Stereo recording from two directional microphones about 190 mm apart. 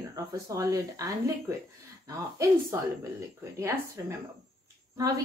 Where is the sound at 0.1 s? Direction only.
20° right (ahead or behind).